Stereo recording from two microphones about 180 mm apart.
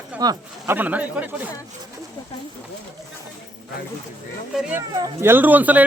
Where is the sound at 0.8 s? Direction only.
10° right (ahead or behind).